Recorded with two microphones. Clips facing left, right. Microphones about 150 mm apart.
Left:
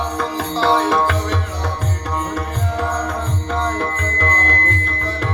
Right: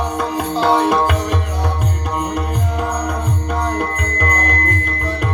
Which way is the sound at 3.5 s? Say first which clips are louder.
Even; 15° right (ahead or behind).